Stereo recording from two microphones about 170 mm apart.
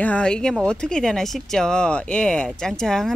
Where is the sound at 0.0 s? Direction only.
5° left (ahead or behind).